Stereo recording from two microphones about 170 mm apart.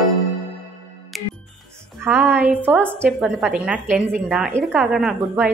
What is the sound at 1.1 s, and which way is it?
Music, centre (ahead or behind).